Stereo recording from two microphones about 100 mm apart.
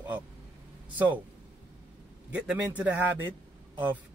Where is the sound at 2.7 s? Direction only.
15° right (ahead or behind).